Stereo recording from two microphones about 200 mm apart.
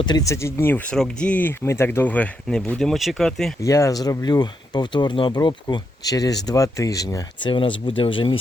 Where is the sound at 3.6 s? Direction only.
15° left (ahead or behind).